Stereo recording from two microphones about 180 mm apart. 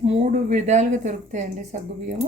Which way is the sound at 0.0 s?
35° right (ahead or behind).